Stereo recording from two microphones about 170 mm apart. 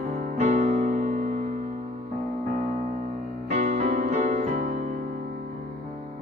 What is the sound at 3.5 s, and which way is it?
Music, 45° right (ahead or behind).